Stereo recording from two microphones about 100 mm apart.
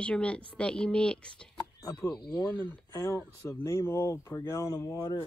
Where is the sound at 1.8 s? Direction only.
30° left (ahead or behind).